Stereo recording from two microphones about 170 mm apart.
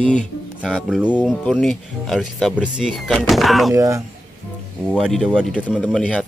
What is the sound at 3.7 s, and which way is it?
Speech, 20° right (ahead or behind).